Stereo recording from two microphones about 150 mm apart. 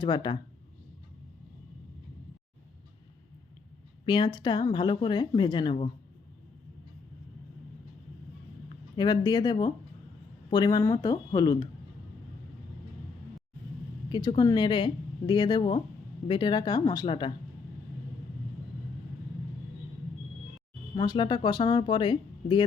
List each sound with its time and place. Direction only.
0.0 s speech: 30° left (ahead or behind)
4.0 s speech: 30° left (ahead or behind)
9.0 s speech: 25° left (ahead or behind)
14.1 s speech: 25° left (ahead or behind)
20.9 s speech: 30° left (ahead or behind)